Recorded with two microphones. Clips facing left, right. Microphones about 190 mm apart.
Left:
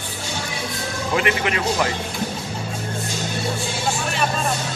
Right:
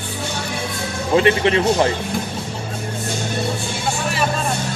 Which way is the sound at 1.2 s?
30° right (ahead or behind).